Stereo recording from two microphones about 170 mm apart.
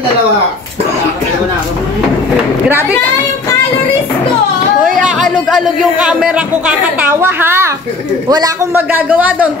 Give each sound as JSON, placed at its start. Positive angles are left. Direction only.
{"t": 5.0, "sound": "speech", "side_deg": 0}
{"t": 8.7, "sound": "speech", "side_deg": -10}